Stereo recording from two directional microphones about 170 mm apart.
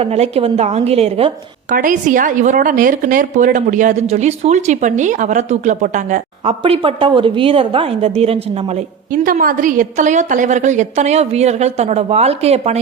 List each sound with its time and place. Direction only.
0.0 s a woman's voice: 35° right (ahead or behind)
1.7 s a woman's voice: 50° right (ahead or behind)
9.2 s a woman's voice: 55° right (ahead or behind); by 12.8 s 40° right (ahead or behind)